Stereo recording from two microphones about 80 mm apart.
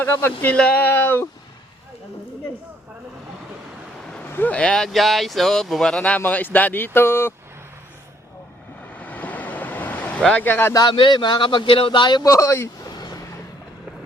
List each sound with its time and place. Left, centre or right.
0.0 s speech: left
4.0 s a sound: centre
4.3 s speech: left
9.0 s vehicle: centre
10.4 s speech: left
10.8 s speech: left
12.2 s speech: left
12.9 s a sound: left